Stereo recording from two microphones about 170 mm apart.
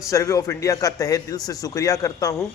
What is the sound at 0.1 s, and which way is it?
A man's voice, 20° left (ahead or behind).